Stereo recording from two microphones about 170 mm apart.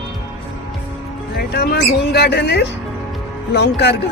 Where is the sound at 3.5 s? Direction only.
80° left.